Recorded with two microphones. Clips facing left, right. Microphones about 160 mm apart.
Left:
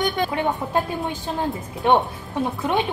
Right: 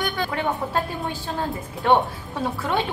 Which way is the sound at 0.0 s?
20° left (ahead or behind).